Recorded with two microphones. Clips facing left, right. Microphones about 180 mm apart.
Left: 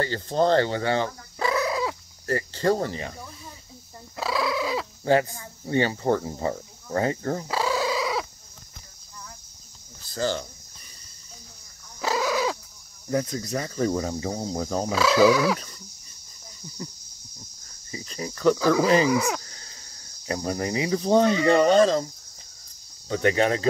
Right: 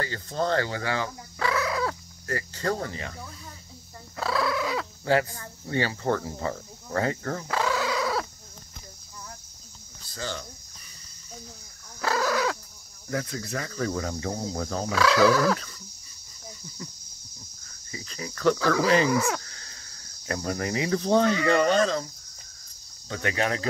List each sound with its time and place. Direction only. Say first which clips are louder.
0.0 s speech: left 6 dB; 30° left (ahead or behind)
2.2 s speech: left 6 dB; 30° left (ahead or behind)
4.2 s fowl: left 1 dB; 15° left (ahead or behind)
5.4 s speech: left 4 dB; 20° left (ahead or behind)
7.7 s dog: left 2 dB; 15° left (ahead or behind)
8.0 s chicken: even; 5° left (ahead or behind)
10.1 s speech: left 8 dB; 40° left (ahead or behind)
12.0 s fowl: left 1 dB; 15° left (ahead or behind)
13.1 s speech: left 5 dB; 20° left (ahead or behind)
15.0 s cricket: left 2 dB; 10° left (ahead or behind)
17.9 s speech: left 4 dB; 25° left (ahead or behind)
18.4 s cricket: left 3 dB; 10° left (ahead or behind)
20.2 s speech: left 2 dB; 20° left (ahead or behind)
23.0 s speech: left 6 dB; 25° left (ahead or behind)